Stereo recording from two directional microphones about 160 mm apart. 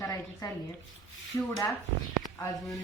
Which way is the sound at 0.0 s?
20° left (ahead or behind).